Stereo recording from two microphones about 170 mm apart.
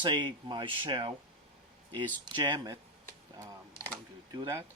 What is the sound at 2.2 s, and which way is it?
Speech, 25° right (ahead or behind).